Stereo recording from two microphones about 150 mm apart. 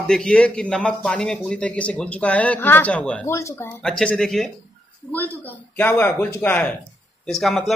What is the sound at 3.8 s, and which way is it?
Speech, 5° left (ahead or behind).